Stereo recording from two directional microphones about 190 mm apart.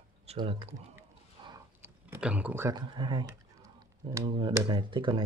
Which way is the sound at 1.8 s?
10° right (ahead or behind).